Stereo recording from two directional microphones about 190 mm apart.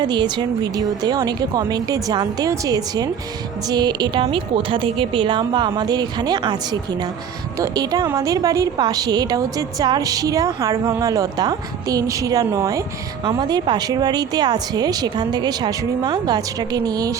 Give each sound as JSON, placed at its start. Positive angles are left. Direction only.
{"t": 0.0, "sound": "a woman's voice", "side_deg": -25}